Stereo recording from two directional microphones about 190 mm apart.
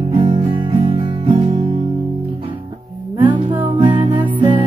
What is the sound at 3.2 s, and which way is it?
Music, 25° right (ahead or behind).